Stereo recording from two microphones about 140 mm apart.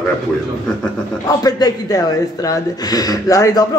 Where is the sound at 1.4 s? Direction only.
25° left (ahead or behind).